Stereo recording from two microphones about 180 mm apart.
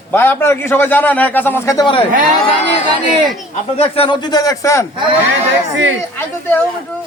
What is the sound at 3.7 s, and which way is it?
A man's voice, 30° left (ahead or behind).